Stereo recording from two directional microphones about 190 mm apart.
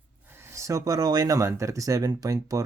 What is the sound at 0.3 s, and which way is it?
Speech, 10° right (ahead or behind).